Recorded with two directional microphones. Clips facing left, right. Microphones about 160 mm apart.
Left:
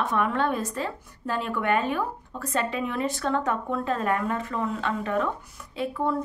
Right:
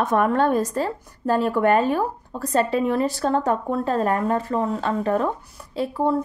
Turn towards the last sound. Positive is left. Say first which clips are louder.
# right 5 dB
turn(degrees=-35)  # may be behind; listen again after turning